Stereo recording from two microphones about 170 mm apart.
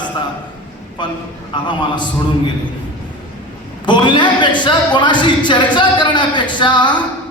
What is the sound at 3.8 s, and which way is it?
A man's voice, 25° left (ahead or behind).